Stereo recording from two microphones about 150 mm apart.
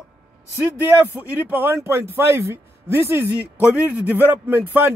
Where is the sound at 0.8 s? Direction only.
10° right (ahead or behind).